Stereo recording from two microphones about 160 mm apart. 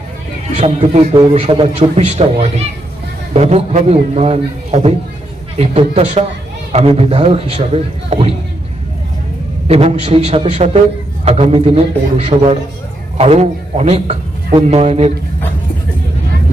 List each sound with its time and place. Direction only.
0.5 s a man's voice: 40° right (ahead or behind)
9.6 s a man's voice: 40° right (ahead or behind)